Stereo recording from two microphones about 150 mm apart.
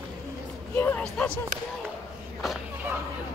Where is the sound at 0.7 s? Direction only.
10° left (ahead or behind).